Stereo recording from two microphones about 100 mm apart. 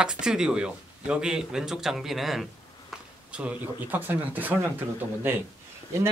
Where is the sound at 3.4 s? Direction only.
15° right (ahead or behind).